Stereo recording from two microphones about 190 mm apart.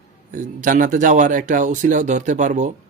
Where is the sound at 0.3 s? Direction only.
45° right (ahead or behind).